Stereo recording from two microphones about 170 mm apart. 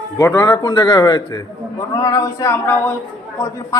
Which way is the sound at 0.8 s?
30° left (ahead or behind).